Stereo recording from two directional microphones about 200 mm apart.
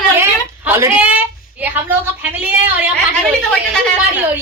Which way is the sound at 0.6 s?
10° right (ahead or behind).